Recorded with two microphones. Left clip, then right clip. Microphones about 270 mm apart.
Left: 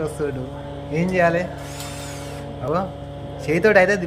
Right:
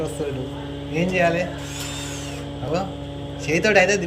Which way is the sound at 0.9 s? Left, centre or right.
Centre.